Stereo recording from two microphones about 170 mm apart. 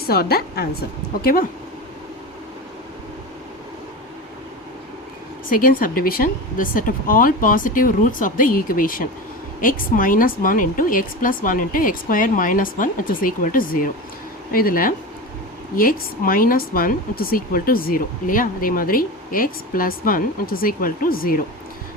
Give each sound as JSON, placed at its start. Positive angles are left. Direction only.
{"t": 0.1, "sound": "speech", "side_deg": 65}
{"t": 5.5, "sound": "a woman's voice", "side_deg": 55}